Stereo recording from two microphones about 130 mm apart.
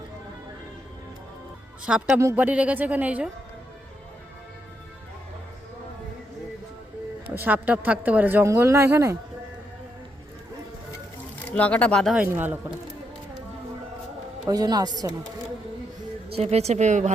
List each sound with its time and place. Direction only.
2.1 s speech: 15° right (ahead or behind)
7.3 s speech: 15° right (ahead or behind)
11.5 s speech: 10° left (ahead or behind)
12.1 s speech: 15° right (ahead or behind)
14.4 s speech: 30° right (ahead or behind)
16.3 s a woman's voice: 55° right (ahead or behind)